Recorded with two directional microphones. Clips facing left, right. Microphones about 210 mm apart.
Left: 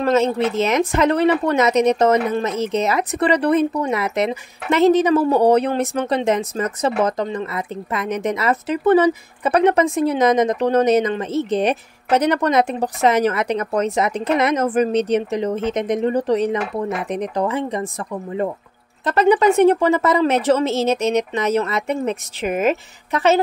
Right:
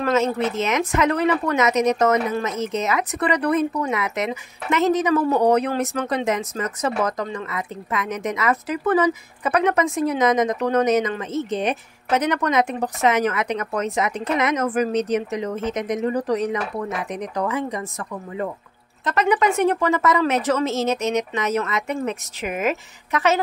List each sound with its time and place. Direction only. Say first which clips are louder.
0.0 s speech: left 3 dB; 30° left (ahead or behind)
19.0 s speech: left 5 dB; 30° left (ahead or behind)